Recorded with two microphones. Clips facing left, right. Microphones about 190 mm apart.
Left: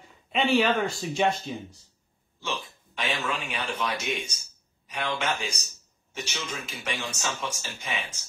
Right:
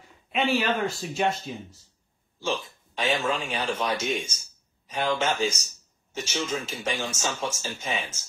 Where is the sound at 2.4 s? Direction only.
30° right (ahead or behind).